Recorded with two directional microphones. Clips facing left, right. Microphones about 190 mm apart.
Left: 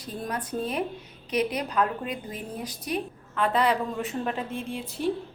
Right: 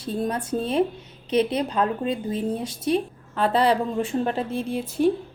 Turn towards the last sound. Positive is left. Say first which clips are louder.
# right 6 dB
turn(degrees=-40)  # may be behind; listen again after turning